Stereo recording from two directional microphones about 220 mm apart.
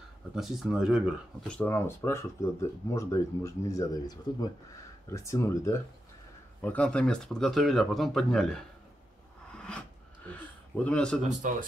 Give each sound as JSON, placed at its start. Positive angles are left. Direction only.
{"t": 0.4, "sound": "speech", "side_deg": 0}
{"t": 10.3, "sound": "speech", "side_deg": 5}
{"t": 11.4, "sound": "speech", "side_deg": -35}